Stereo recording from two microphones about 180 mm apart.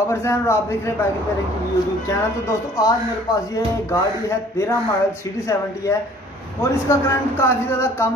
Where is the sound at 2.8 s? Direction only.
20° left (ahead or behind).